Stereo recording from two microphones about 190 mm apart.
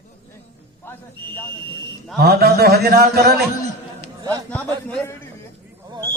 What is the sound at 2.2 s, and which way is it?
A man's voice, 55° right (ahead or behind).